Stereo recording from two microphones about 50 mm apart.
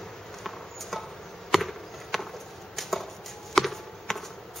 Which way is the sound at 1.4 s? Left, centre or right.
Centre.